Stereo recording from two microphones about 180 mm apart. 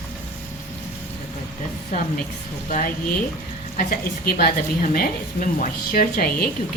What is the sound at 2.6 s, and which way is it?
A woman's voice, 45° left (ahead or behind).